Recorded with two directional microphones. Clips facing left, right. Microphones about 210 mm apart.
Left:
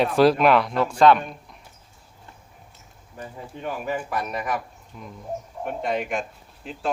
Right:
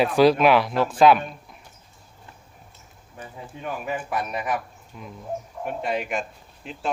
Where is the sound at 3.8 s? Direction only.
5° right (ahead or behind).